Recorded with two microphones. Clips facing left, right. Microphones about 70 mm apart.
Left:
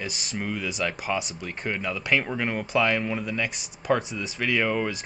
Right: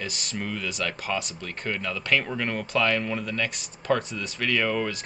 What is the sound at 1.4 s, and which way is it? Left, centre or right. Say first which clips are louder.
Speech: left 1 dB; centre.